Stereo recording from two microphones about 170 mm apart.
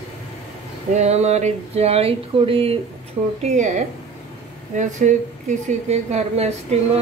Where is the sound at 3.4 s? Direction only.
45° right (ahead or behind).